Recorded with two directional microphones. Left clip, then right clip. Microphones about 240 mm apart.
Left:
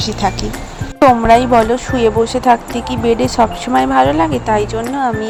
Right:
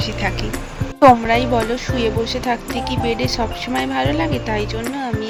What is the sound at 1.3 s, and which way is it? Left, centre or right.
Speech, centre.